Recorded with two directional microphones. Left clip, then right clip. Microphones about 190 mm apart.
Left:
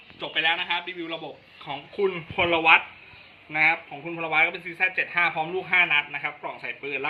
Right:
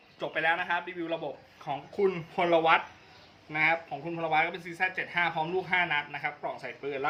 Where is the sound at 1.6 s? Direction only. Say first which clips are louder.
Left 2 dB; 20° right (ahead or behind).